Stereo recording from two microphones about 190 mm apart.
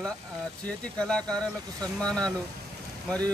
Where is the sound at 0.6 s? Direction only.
5° left (ahead or behind).